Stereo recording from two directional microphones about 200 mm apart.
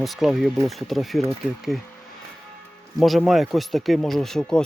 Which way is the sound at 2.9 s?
Centre (ahead or behind).